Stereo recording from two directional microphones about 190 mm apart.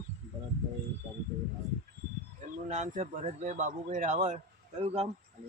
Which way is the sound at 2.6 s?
40° right (ahead or behind).